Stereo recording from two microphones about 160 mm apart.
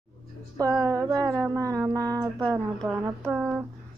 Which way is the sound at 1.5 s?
20° right (ahead or behind).